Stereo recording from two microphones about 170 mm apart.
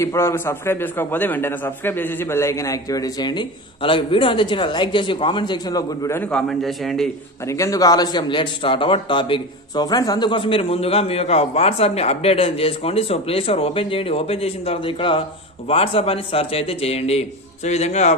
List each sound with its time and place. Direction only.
0.0 s a man's voice: 15° left (ahead or behind)
7.4 s a man's voice: 20° left (ahead or behind); by 18.1 s 40° left (ahead or behind)